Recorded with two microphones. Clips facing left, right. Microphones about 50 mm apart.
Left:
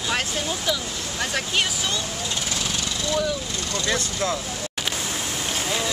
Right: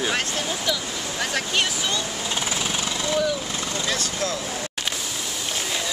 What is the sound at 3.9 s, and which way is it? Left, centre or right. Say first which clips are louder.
Speech: left 2 dB; left.